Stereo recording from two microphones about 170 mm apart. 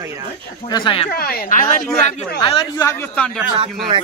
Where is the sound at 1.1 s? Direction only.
65° left (ahead or behind).